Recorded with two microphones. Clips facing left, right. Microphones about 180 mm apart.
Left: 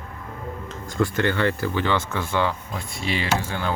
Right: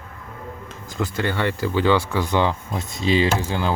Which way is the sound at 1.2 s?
15° right (ahead or behind).